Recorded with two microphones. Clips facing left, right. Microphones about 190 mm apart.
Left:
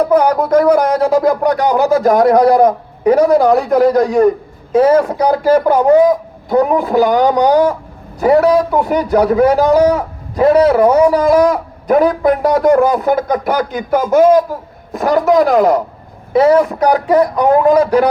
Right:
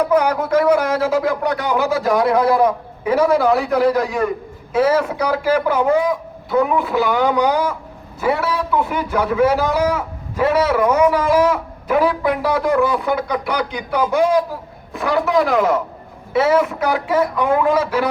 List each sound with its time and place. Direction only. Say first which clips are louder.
0.0 s a man's voice: left 5 dB; 35° left (ahead or behind)